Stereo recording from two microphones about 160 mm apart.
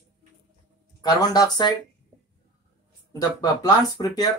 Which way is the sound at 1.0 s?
25° left (ahead or behind).